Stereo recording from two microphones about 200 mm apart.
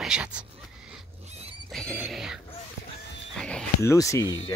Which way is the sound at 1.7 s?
Centre (ahead or behind).